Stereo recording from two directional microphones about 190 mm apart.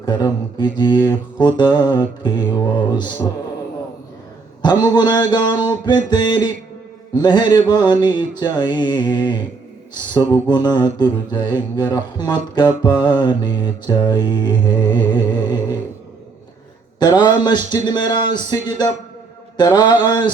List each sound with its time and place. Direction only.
0.0 s mantra: 25° left (ahead or behind)
4.8 s mantra: 25° left (ahead or behind)
17.0 s mantra: 25° left (ahead or behind)